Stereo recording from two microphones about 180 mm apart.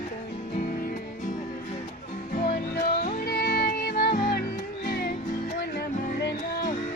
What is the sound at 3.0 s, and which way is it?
Music, 60° left (ahead or behind).